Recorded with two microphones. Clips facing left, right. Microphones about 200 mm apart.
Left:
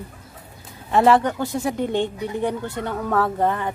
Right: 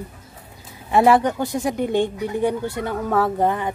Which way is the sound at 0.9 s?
10° right (ahead or behind).